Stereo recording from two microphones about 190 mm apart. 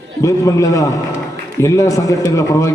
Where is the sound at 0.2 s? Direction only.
15° left (ahead or behind).